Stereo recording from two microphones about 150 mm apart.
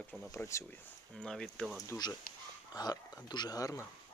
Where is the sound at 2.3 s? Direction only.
70° left (ahead or behind).